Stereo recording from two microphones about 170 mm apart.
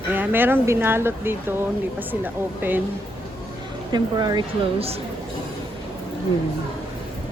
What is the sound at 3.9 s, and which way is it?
A woman's voice, 25° right (ahead or behind).